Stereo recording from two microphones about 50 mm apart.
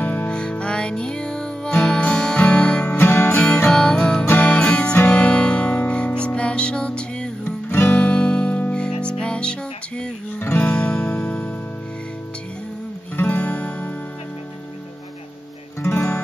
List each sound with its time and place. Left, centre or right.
0.0 s music: left
0.3 s music: centre
3.0 s music: left
3.4 s music: left
4.3 s music: left
4.6 s music: left
4.9 s music: left
5.2 s music: left
7.7 s music: left
13.1 s music: left
13.4 s music: left
15.8 s music: left